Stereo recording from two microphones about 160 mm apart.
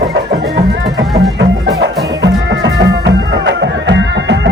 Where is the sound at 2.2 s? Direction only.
90° right.